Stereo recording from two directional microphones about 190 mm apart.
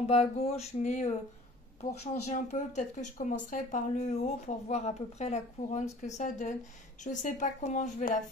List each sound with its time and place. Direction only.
0.0 s speech: 35° left (ahead or behind)
2.3 s speech: 40° left (ahead or behind)